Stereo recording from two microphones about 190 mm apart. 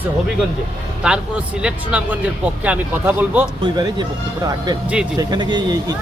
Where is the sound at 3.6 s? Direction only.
25° right (ahead or behind).